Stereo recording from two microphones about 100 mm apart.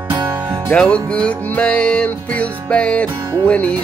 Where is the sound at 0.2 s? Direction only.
20° right (ahead or behind).